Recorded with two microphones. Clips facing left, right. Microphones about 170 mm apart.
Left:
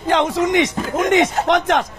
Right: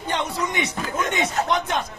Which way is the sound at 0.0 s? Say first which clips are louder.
Left 9 dB; 90° left.